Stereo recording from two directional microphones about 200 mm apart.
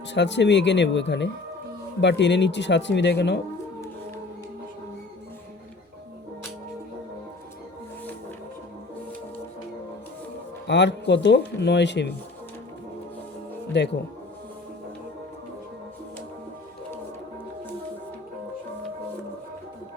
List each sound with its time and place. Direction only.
0.1 s speech: 65° left (ahead or behind)
10.7 s speech: 60° left (ahead or behind)
13.7 s speech: 60° left (ahead or behind)